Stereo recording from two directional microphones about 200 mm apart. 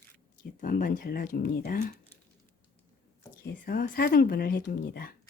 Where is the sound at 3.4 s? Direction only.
45° left (ahead or behind).